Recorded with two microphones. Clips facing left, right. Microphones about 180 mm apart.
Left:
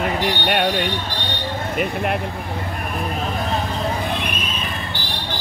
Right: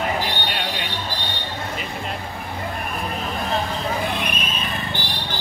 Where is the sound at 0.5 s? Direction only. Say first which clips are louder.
Left 9 dB; 55° left (ahead or behind).